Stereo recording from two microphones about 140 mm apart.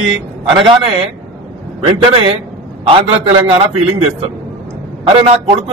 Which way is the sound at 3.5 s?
45° right (ahead or behind).